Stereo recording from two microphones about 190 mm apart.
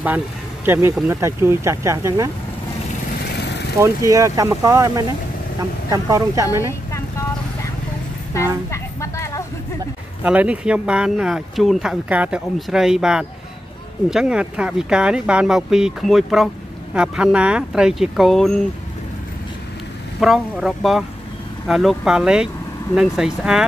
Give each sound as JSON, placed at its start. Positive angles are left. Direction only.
{"t": 0.7, "sound": "speech", "side_deg": -10}
{"t": 3.8, "sound": "speech", "side_deg": -15}
{"t": 6.6, "sound": "vehicle", "side_deg": 15}
{"t": 8.6, "sound": "a sound", "side_deg": 15}
{"t": 10.2, "sound": "speech", "side_deg": -5}
{"t": 20.2, "sound": "speech", "side_deg": 0}